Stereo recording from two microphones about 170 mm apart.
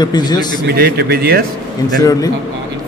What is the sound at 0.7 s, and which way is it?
Speech, 70° right (ahead or behind).